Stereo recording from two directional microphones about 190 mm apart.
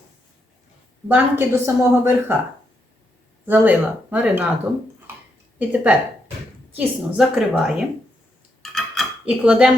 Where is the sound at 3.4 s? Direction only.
10° right (ahead or behind).